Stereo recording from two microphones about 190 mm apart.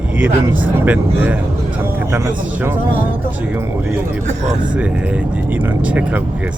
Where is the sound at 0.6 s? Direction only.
5° right (ahead or behind).